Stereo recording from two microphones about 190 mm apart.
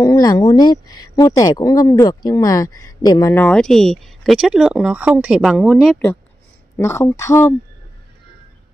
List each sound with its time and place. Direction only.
0.0 s speech: 20° left (ahead or behind); by 6.0 s centre (ahead or behind)
6.8 s speech: 15° left (ahead or behind)